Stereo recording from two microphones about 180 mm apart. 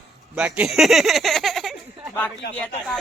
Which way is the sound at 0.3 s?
10° right (ahead or behind).